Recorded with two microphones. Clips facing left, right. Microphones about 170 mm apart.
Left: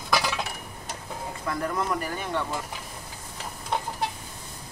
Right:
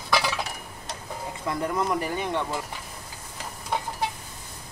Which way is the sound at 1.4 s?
20° right (ahead or behind).